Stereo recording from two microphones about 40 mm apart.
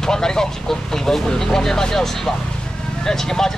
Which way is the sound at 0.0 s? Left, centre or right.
Centre.